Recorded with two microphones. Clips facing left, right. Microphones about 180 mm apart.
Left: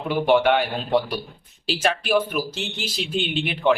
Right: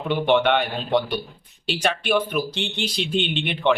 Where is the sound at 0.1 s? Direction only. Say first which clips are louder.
Left 1 dB; 10° left (ahead or behind).